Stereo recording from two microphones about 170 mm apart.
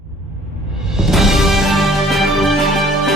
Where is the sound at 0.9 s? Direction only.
Centre (ahead or behind).